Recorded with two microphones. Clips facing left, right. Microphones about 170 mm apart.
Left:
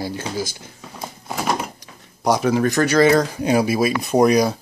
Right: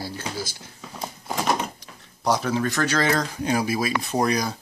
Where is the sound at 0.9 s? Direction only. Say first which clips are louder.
Left 1 dB; 5° left (ahead or behind).